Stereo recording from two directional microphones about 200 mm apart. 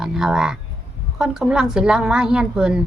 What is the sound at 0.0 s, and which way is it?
A woman's voice, 5° right (ahead or behind).